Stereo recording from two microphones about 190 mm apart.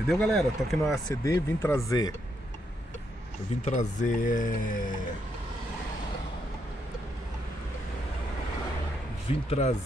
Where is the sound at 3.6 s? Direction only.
40° left (ahead or behind).